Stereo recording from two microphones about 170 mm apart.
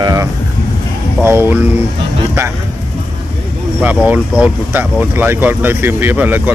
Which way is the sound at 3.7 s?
10° right (ahead or behind).